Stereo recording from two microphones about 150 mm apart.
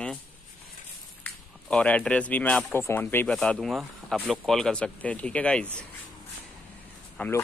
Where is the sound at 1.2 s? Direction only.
10° left (ahead or behind).